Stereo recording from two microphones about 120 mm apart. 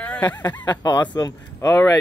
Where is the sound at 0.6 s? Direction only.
35° left (ahead or behind).